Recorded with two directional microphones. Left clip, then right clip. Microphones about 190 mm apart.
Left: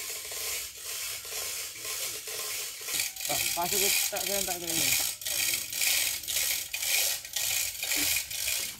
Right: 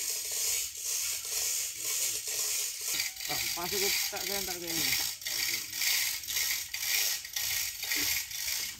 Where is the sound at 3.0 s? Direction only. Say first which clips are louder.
Left 4 dB; 35° left (ahead or behind).